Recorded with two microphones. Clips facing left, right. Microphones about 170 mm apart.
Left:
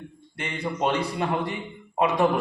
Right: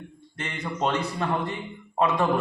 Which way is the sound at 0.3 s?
10° left (ahead or behind).